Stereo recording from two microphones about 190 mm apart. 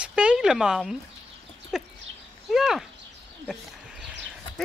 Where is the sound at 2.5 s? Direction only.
Centre (ahead or behind).